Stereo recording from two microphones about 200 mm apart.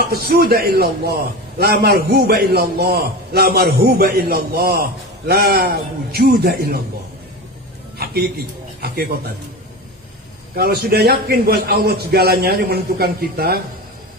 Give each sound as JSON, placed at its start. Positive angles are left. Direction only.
{"t": 0.0, "sound": "a man's voice", "side_deg": -50}
{"t": 8.0, "sound": "a man's voice", "side_deg": -50}
{"t": 10.5, "sound": "a man's voice", "side_deg": -50}